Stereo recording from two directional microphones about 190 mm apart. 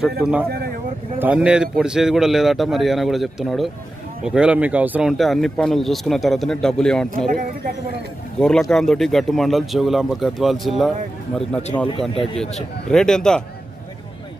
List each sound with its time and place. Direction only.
0.2 s speech: 5° right (ahead or behind)
7.2 s speech: 45° right (ahead or behind)
8.4 s speech: 5° left (ahead or behind)